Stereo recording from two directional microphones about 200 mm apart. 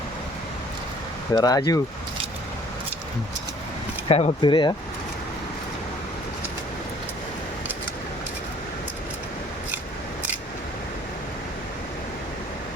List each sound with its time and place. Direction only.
1.3 s speech: 20° left (ahead or behind)
4.1 s speech: 30° left (ahead or behind)